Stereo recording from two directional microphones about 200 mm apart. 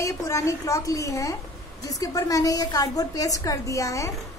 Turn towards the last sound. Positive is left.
turn(degrees=15)  # may be behind; listen again after turning